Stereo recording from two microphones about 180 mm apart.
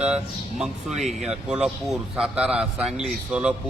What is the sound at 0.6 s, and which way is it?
Speech, centre (ahead or behind).